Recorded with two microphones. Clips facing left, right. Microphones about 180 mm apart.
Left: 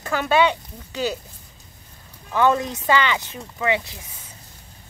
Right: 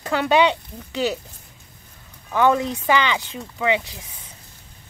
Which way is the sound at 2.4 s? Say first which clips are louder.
Right 1 dB; 15° right (ahead or behind).